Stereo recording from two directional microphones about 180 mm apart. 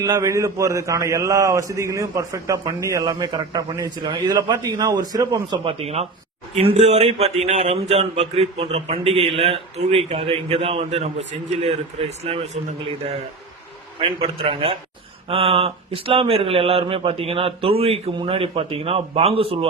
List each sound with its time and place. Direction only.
0.0 s speech: 20° right (ahead or behind)